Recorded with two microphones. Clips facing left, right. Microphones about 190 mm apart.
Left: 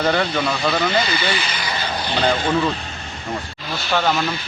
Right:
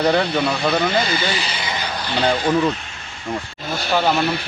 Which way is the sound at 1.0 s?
40° right (ahead or behind).